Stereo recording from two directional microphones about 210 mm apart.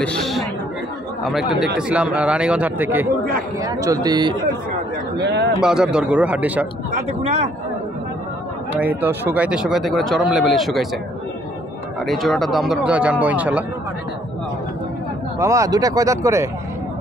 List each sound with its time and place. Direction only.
0.0 s chatter: 5° left (ahead or behind)
1.2 s a man's voice: centre (ahead or behind); by 4.4 s 20° right (ahead or behind)
5.2 s speech: 55° right (ahead or behind)
5.6 s speech: 5° right (ahead or behind)
6.9 s speech: 30° right (ahead or behind)
8.7 s speech: 10° right (ahead or behind)
12.1 s speech: centre (ahead or behind)
15.3 s speech: 15° right (ahead or behind)